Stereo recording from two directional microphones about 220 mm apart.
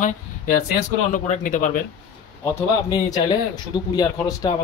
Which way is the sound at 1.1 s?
35° left (ahead or behind).